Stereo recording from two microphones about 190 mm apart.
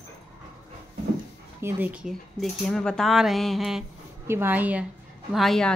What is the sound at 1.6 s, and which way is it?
A woman's voice, 10° right (ahead or behind).